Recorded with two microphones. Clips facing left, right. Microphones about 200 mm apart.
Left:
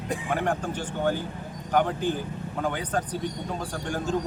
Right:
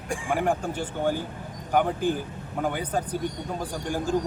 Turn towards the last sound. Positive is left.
turn(degrees=-10)  # may be behind; listen again after turning